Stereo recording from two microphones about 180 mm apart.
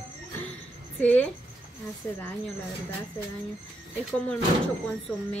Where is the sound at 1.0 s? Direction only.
10° left (ahead or behind).